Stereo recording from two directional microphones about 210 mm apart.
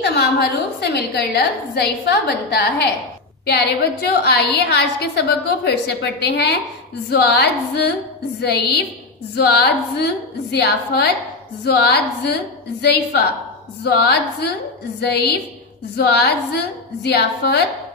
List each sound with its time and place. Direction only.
0.0 s a woman's voice: 50° left (ahead or behind)
13.8 s a woman's voice: 50° left (ahead or behind)